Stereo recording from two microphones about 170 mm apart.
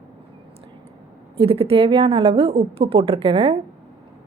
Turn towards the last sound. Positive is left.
turn(degrees=-30)  # may be behind; listen again after turning